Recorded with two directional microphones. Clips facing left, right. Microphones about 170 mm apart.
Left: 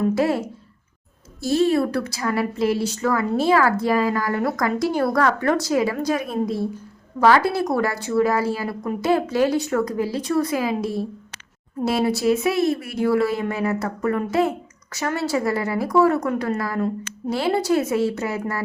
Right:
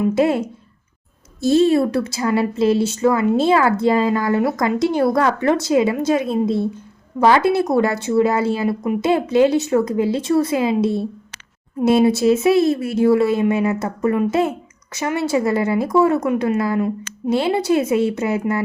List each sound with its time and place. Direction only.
0.0 s a woman's voice: 20° right (ahead or behind)